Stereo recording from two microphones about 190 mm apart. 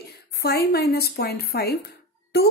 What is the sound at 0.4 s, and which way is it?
Speech, 55° left (ahead or behind).